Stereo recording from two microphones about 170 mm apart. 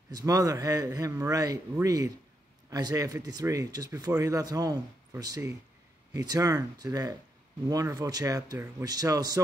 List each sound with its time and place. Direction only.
0.1 s a man's voice: 20° right (ahead or behind)